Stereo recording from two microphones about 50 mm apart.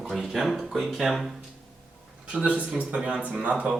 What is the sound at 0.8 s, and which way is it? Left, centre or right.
Speech, centre.